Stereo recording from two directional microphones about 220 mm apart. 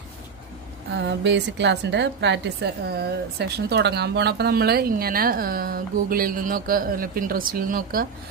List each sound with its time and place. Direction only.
0.9 s a woman's voice: 55° right (ahead or behind)